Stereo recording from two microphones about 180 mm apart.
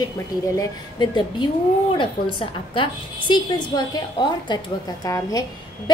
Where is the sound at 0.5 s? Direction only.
25° left (ahead or behind).